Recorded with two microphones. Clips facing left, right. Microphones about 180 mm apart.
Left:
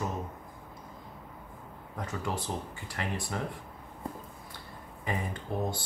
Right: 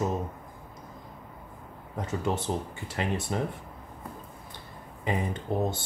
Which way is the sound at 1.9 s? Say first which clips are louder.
Right 5 dB; 25° right (ahead or behind).